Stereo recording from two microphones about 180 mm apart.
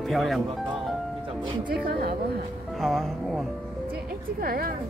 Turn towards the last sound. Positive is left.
turn(degrees=-55)  # may be behind; listen again after turning